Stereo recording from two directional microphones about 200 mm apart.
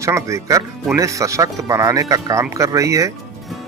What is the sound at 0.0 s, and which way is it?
Speech, 15° right (ahead or behind).